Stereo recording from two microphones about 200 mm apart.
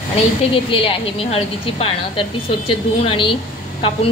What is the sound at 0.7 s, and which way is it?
Speech, 25° left (ahead or behind).